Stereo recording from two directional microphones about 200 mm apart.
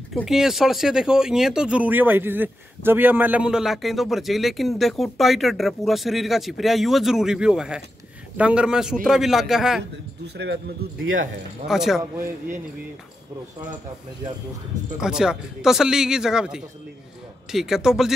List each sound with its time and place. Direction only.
0.1 s speech: centre (ahead or behind)
10.2 s speech: 55° right (ahead or behind)
11.6 s speech: centre (ahead or behind)
15.0 s speech: 5° right (ahead or behind)